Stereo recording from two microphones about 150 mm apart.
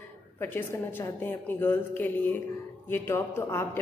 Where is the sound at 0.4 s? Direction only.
15° left (ahead or behind).